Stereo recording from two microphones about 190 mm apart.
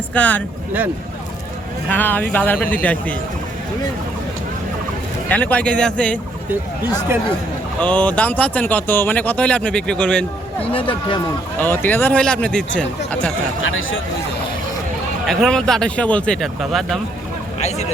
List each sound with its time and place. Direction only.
0.1 s speech: 10° left (ahead or behind)
1.9 s speech: 10° left (ahead or behind)
5.3 s speech: 10° left (ahead or behind)
7.1 s speech: 15° right (ahead or behind)
7.8 s speech: 5° left (ahead or behind)
10.7 s speech: 30° left (ahead or behind)
11.6 s speech: 10° left (ahead or behind)
13.6 s speech: 90° left
15.3 s speech: centre (ahead or behind)
17.6 s speech: 35° left (ahead or behind)